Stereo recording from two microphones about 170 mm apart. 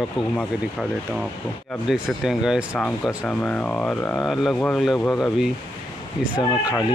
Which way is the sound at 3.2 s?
10° left (ahead or behind).